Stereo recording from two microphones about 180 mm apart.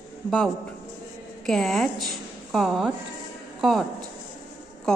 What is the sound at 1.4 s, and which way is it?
A woman's voice, centre (ahead or behind).